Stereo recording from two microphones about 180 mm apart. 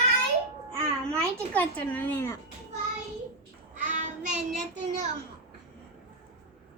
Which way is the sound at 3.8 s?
45° right (ahead or behind).